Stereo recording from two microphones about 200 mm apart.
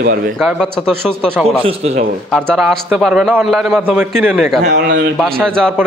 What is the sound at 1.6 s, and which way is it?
Speech, 30° right (ahead or behind).